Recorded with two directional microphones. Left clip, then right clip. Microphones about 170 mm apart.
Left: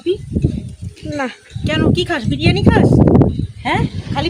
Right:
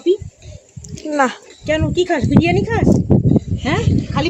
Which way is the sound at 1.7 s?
55° left (ahead or behind).